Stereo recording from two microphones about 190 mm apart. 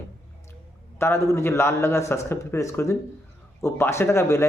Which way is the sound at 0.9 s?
15° left (ahead or behind).